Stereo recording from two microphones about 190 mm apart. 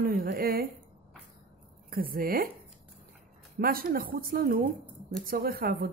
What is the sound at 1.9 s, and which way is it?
Speech, 50° right (ahead or behind).